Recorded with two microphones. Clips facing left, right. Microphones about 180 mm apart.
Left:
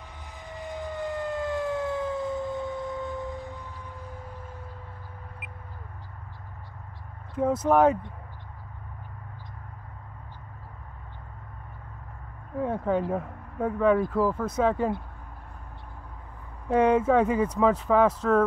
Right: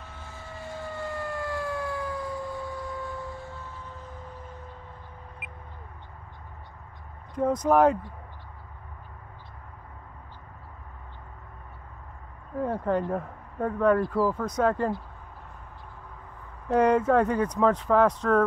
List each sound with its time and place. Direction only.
0.2 s siren: 15° left (ahead or behind)
7.3 s speech: 5° left (ahead or behind)
12.5 s speech: centre (ahead or behind)
16.6 s speech: centre (ahead or behind)